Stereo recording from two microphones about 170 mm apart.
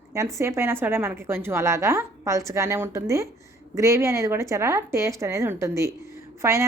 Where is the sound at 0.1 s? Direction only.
15° right (ahead or behind).